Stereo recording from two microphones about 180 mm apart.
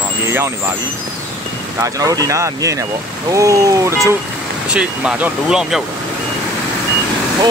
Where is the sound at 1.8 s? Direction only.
20° right (ahead or behind).